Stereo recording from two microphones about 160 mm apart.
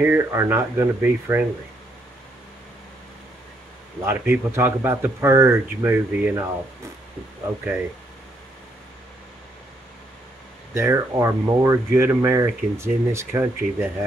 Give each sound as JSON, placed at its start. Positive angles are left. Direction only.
{"t": 0.0, "sound": "speech", "side_deg": -15}
{"t": 4.0, "sound": "speech", "side_deg": -15}
{"t": 10.7, "sound": "speech", "side_deg": -20}